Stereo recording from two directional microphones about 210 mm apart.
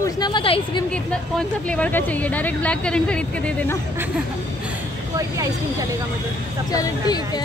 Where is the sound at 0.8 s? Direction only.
5° left (ahead or behind).